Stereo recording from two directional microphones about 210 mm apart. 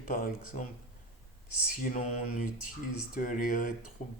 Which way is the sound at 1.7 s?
40° left (ahead or behind).